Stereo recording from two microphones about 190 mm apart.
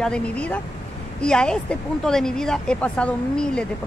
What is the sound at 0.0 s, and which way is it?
Speech, 5° left (ahead or behind).